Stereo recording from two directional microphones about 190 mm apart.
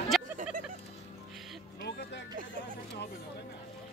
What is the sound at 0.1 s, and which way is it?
Sheep, centre (ahead or behind).